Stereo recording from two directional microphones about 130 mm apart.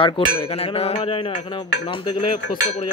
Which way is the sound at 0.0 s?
50° left (ahead or behind).